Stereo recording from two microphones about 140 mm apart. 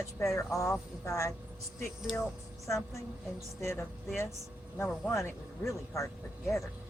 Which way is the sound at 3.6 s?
20° left (ahead or behind).